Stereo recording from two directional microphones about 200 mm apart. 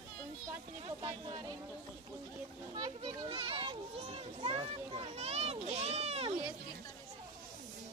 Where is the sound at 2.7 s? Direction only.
20° right (ahead or behind).